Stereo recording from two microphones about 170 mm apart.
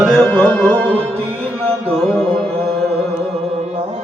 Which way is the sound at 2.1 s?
Centre (ahead or behind).